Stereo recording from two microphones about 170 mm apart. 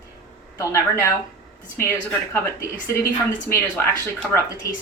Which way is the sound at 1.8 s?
15° left (ahead or behind).